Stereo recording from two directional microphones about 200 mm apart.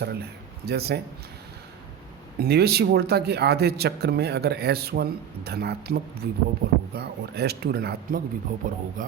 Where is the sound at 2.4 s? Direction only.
55° right (ahead or behind).